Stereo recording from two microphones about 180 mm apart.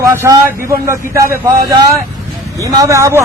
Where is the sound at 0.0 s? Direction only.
15° right (ahead or behind).